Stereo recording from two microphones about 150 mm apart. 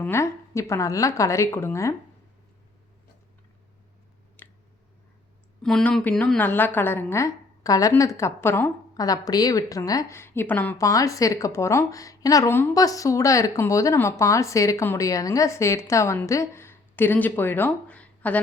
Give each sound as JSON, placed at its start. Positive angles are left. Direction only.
{"t": 0.0, "sound": "a woman's voice", "side_deg": 15}
{"t": 4.4, "sound": "a sound", "side_deg": 15}
{"t": 5.6, "sound": "a woman's voice", "side_deg": 5}